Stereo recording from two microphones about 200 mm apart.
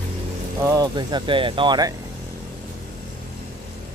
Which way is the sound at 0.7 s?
20° right (ahead or behind).